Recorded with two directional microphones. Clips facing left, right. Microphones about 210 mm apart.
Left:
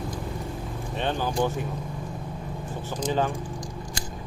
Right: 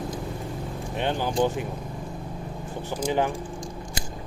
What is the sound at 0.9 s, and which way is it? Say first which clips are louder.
Speech: right 1 dB; 15° right (ahead or behind).